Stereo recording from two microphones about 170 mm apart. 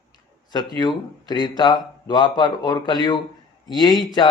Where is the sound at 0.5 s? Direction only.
25° left (ahead or behind).